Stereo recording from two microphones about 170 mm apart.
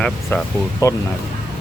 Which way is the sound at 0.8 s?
20° left (ahead or behind).